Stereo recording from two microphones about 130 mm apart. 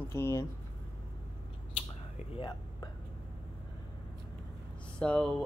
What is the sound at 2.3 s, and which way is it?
Speech, 35° left (ahead or behind).